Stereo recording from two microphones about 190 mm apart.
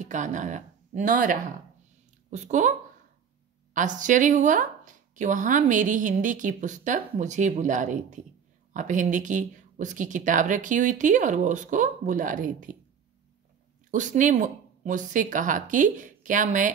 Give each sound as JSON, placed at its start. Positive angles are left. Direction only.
{"t": 0.0, "sound": "a woman's voice", "side_deg": -40}
{"t": 3.7, "sound": "a woman's voice", "side_deg": -40}
{"t": 13.8, "sound": "speech", "side_deg": -40}